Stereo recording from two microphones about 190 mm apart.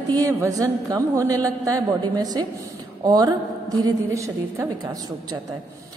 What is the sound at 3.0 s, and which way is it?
A woman's voice, 20° right (ahead or behind).